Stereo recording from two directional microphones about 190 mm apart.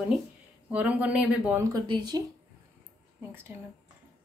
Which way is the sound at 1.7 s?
25° right (ahead or behind).